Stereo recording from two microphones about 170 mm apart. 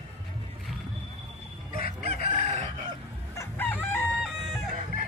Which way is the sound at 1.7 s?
55° left (ahead or behind).